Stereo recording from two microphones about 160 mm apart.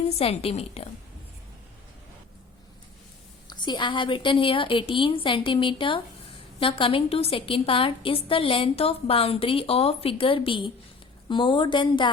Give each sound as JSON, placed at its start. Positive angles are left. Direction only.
{"t": 0.2, "sound": "a woman's voice", "side_deg": 40}
{"t": 3.4, "sound": "a woman's voice", "side_deg": 25}